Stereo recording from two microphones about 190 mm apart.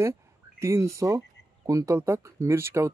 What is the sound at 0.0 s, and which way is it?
Speech, 15° right (ahead or behind).